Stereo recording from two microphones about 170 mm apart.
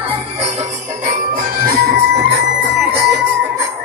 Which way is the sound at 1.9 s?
75° right (ahead or behind).